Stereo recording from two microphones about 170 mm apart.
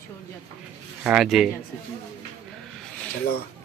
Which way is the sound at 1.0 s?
5° right (ahead or behind).